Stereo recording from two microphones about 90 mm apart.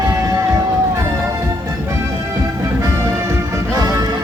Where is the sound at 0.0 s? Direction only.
40° right (ahead or behind).